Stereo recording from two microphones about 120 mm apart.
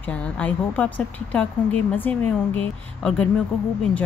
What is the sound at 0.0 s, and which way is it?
A woman's voice, 10° left (ahead or behind).